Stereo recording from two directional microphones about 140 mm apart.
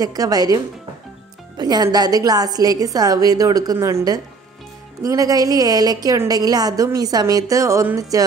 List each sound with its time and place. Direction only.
0.0 s a woman's voice: 25° right (ahead or behind)
1.6 s a woman's voice: 30° right (ahead or behind)